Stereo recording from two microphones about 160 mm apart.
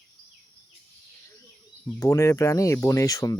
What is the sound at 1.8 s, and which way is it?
Speech, 20° left (ahead or behind).